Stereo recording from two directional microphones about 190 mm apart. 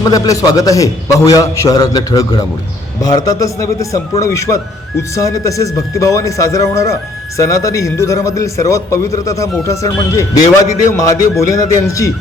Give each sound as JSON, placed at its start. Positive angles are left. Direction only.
{"t": 0.0, "sound": "a man's voice", "side_deg": 20}